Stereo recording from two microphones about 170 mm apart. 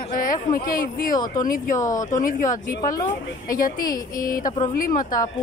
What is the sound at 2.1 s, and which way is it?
A woman's voice, 50° left (ahead or behind).